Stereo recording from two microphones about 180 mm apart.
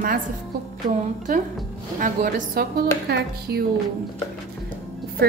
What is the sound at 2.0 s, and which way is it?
Speech, 50° right (ahead or behind).